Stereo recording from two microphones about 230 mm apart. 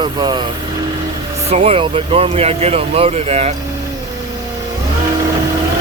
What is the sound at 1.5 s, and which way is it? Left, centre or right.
Speech, right.